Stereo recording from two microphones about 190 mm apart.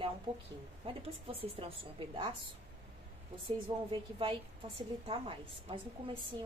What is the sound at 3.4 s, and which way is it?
A woman's voice, 25° right (ahead or behind).